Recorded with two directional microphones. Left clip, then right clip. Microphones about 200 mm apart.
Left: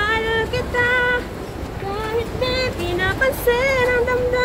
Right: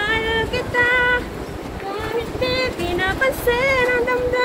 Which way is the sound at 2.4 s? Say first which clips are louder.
Right 3 dB; 35° left (ahead or behind).